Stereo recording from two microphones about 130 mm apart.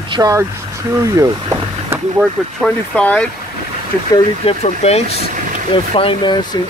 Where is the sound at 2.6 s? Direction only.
10° left (ahead or behind).